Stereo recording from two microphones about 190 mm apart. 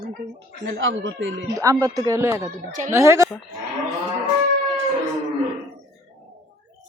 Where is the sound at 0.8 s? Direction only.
85° right.